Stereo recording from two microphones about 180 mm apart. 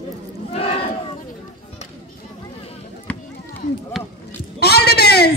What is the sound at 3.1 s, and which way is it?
Run, 5° left (ahead or behind).